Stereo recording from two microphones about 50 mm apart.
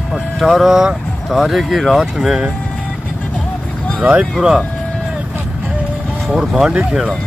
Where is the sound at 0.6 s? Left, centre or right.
Centre.